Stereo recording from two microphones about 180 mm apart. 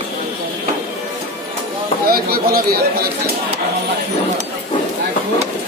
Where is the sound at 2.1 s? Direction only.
55° right (ahead or behind).